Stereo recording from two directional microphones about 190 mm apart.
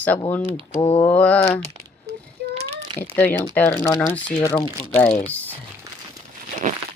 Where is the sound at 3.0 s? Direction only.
10° left (ahead or behind).